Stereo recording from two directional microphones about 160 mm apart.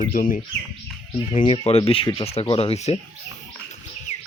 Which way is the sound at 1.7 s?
35° left (ahead or behind).